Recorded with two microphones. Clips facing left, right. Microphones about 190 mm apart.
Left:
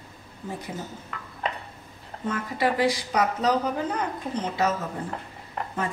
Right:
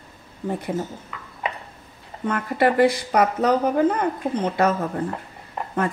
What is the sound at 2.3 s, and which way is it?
A woman's voice, 60° right (ahead or behind).